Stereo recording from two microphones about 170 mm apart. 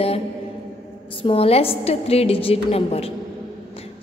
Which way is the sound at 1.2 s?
35° left (ahead or behind).